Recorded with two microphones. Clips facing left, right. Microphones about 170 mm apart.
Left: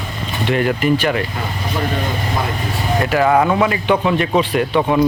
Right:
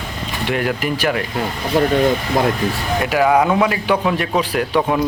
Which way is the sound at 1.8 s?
45° right (ahead or behind).